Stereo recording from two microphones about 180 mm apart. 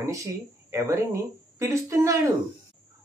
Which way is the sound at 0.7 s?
15° right (ahead or behind).